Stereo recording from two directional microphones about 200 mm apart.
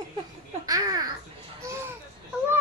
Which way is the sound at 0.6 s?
20° right (ahead or behind).